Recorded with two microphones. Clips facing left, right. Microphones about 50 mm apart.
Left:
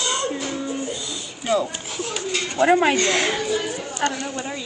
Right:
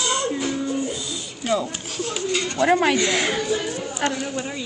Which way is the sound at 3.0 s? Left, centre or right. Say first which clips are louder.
Left 1 dB; centre.